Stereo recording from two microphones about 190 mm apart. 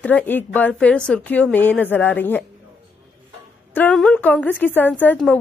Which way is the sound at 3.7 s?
5° left (ahead or behind).